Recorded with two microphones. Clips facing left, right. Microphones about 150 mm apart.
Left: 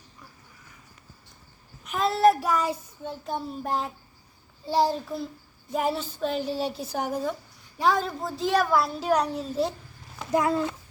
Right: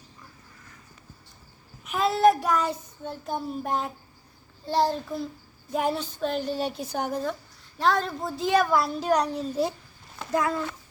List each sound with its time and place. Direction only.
1.8 s a woman's voice: centre (ahead or behind)
10.3 s speech: 20° left (ahead or behind)